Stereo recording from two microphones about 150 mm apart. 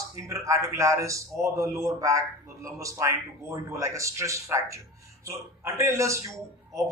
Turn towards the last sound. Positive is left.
turn(degrees=-20)  # may be behind; listen again after turning